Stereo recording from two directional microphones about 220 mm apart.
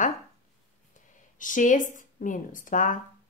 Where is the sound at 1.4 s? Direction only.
35° left (ahead or behind).